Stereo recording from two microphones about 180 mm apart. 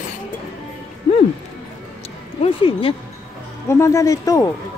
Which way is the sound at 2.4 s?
30° left (ahead or behind).